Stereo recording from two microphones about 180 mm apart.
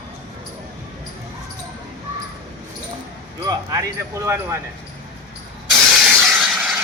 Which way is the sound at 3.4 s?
20° right (ahead or behind).